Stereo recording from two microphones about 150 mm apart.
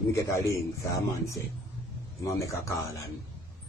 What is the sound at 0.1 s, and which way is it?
A man's voice, 20° left (ahead or behind).